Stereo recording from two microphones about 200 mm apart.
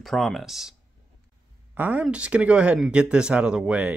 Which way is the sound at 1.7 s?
10° right (ahead or behind).